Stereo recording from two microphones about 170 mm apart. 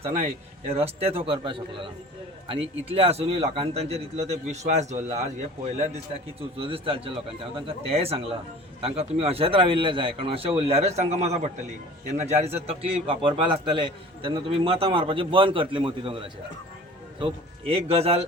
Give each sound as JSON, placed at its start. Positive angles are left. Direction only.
{"t": 0.7, "sound": "a man's voice", "side_deg": -35}